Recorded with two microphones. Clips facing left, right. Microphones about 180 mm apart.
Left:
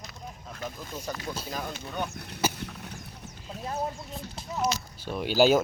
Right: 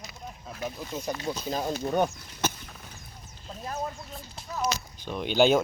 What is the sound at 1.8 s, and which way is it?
Speech, 50° right (ahead or behind).